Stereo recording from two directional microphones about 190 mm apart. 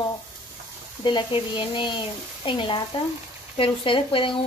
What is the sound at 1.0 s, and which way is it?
Speech, 25° left (ahead or behind).